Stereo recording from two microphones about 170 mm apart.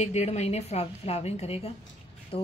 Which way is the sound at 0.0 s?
40° left (ahead or behind).